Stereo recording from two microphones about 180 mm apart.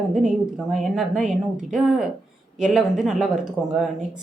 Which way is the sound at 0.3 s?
5° right (ahead or behind).